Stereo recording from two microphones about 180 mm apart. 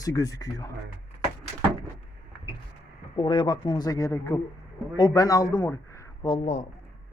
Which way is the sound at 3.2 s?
25° left (ahead or behind).